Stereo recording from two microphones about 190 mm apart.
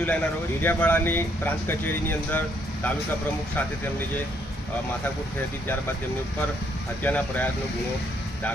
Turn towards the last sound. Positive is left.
turn(degrees=10)  # may be behind; listen again after turning